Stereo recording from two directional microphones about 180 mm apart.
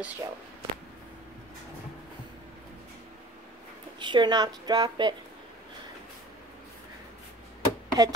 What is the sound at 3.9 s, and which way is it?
A woman's voice, 25° right (ahead or behind).